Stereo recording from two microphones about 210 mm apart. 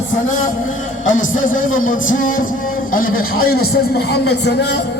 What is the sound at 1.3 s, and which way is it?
Speech, 40° left (ahead or behind).